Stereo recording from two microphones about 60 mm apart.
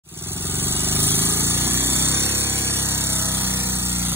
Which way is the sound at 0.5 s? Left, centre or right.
Right.